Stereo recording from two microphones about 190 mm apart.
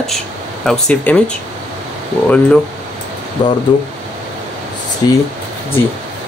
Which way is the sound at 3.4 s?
25° left (ahead or behind).